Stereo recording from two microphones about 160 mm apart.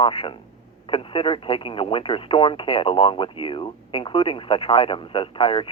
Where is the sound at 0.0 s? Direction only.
35° left (ahead or behind).